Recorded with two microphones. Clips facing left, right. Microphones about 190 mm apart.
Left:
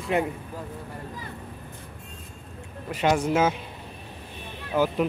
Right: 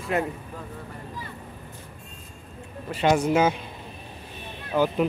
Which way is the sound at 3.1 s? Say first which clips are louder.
Right 2 dB; centre (ahead or behind).